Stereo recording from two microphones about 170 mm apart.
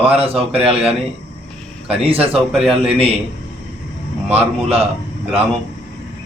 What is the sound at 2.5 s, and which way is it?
Speech, 5° right (ahead or behind).